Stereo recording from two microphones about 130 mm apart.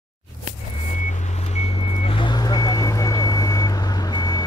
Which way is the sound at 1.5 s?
55° left (ahead or behind).